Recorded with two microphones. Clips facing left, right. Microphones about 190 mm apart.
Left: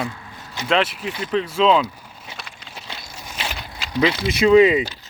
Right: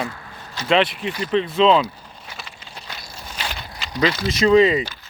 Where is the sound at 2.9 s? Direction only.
25° left (ahead or behind).